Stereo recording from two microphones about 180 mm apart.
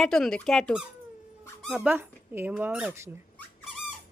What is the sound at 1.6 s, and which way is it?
Squeak, centre (ahead or behind).